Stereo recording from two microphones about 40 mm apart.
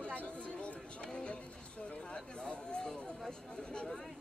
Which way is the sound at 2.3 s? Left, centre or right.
Left.